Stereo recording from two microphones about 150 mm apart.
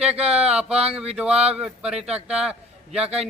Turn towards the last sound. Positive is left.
turn(degrees=-5)  # may be behind; listen again after turning